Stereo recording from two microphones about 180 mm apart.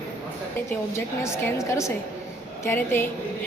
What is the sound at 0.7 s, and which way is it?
A woman's voice, 15° left (ahead or behind).